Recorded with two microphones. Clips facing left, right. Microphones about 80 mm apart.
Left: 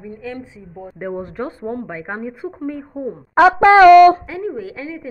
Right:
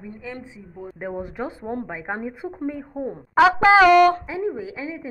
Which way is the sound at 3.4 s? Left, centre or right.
Left.